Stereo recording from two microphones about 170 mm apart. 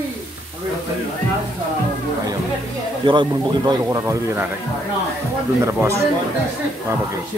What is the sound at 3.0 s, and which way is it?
Speech, 30° right (ahead or behind).